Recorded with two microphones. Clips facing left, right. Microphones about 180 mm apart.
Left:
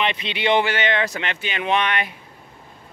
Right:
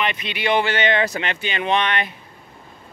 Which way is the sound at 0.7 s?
5° left (ahead or behind).